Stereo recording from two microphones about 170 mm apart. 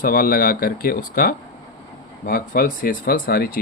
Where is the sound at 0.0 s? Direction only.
60° left (ahead or behind).